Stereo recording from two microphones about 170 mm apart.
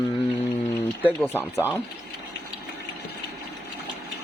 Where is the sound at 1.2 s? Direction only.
10° left (ahead or behind).